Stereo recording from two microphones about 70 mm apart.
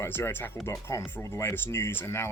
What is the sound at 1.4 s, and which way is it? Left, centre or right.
Speech, left.